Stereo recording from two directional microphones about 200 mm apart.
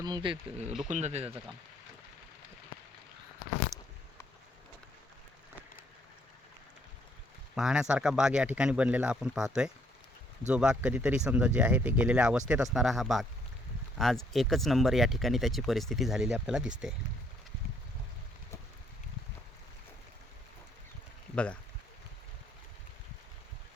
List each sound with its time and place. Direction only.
0.0 s speech: 20° right (ahead or behind)
0.9 s speech: 35° right (ahead or behind)
7.5 s speech: 5° right (ahead or behind)
10.5 s speech: 5° right (ahead or behind)
21.3 s speech: 5° left (ahead or behind)